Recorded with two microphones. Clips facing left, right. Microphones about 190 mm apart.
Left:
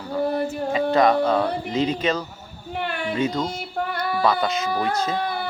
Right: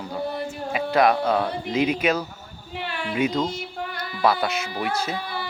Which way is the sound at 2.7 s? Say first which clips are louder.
Left 4 dB; 50° left (ahead or behind).